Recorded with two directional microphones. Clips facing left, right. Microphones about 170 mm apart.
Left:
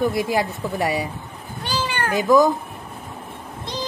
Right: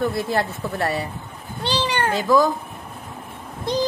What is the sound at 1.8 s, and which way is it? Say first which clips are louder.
Cat: right 2 dB; 30° right (ahead or behind).